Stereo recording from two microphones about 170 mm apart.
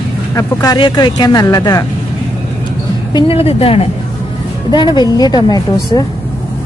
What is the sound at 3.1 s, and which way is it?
Speech, 30° left (ahead or behind).